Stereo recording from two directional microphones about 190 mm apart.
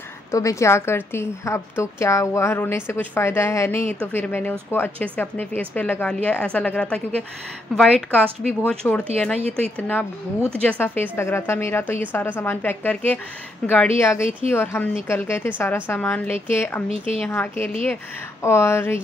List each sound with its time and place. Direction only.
0.3 s a woman's voice: 15° left (ahead or behind)
16.9 s a woman's voice: 30° right (ahead or behind)
17.3 s a woman's voice: 10° left (ahead or behind)